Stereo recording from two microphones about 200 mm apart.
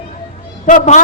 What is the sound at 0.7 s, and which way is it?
Speech, 40° left (ahead or behind).